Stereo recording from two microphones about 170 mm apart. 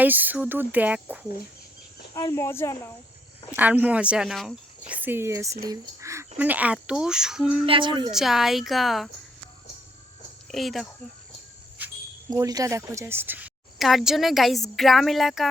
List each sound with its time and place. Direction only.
0.0 s speech: 10° right (ahead or behind)
2.1 s speech: 15° left (ahead or behind)
3.5 s speech: 10° right (ahead or behind)
7.6 s a woman's voice: 30° right (ahead or behind)
8.1 s a woman's voice: centre (ahead or behind)
10.5 s a woman's voice: centre (ahead or behind)
12.3 s a woman's voice: 20° right (ahead or behind); by 15.4 s centre (ahead or behind)